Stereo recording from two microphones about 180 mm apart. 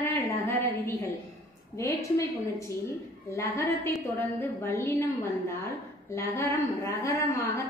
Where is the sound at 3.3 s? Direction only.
15° left (ahead or behind).